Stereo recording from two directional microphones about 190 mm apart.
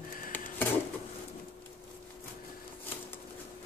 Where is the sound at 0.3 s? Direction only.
10° left (ahead or behind).